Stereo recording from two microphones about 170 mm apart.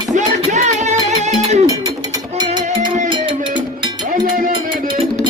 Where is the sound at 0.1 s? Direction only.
45° right (ahead or behind).